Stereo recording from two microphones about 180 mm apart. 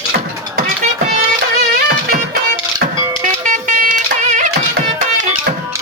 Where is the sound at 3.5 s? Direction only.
45° right (ahead or behind).